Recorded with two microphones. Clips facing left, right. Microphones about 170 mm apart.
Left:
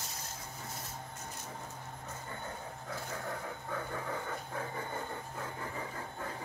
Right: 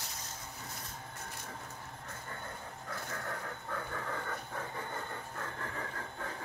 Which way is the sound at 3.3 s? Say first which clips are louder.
Left 1 dB; 10° left (ahead or behind).